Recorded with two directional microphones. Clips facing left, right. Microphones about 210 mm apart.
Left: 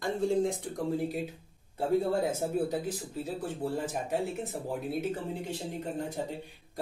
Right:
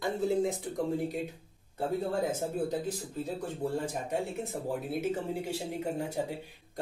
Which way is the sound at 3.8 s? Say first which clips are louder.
Left 1 dB; centre (ahead or behind).